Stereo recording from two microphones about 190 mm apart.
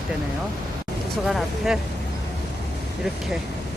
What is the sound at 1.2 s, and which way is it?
Speech, centre (ahead or behind).